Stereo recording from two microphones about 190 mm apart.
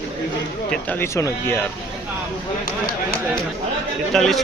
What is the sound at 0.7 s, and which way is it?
Speech, 10° left (ahead or behind).